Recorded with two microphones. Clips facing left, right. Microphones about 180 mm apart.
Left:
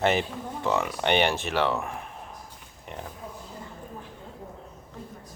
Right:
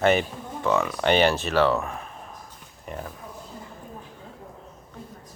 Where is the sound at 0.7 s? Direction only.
20° left (ahead or behind).